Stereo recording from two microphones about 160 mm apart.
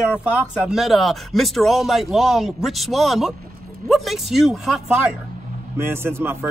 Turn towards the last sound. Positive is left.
turn(degrees=-15)  # may be behind; listen again after turning